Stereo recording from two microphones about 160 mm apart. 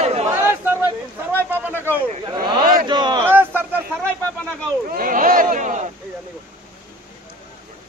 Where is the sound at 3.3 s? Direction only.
15° right (ahead or behind).